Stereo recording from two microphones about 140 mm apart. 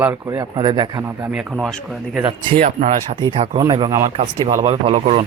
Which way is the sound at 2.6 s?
55° right (ahead or behind).